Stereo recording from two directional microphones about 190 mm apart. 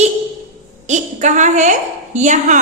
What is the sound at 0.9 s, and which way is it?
A woman's voice, 40° right (ahead or behind).